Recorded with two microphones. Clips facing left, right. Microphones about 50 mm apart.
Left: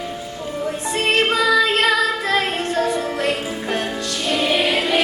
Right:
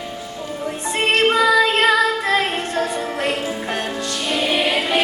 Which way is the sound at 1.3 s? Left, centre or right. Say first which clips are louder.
Right 2 dB; centre.